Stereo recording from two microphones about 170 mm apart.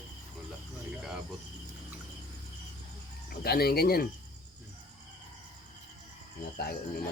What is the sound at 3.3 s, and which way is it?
Speech, 65° left (ahead or behind).